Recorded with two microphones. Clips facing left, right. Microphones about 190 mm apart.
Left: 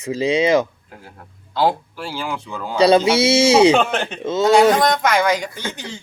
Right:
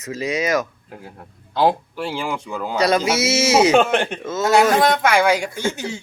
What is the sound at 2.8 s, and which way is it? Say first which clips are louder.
Speech: left 5 dB; 30° left (ahead or behind).